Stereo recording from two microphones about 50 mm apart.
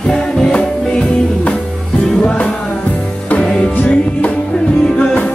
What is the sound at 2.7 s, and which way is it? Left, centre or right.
Music, left.